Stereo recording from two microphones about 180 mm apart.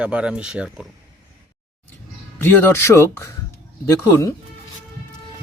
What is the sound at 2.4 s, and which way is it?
Speech, 10° left (ahead or behind).